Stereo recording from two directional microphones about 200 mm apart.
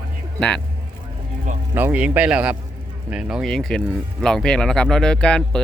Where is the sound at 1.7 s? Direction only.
10° right (ahead or behind).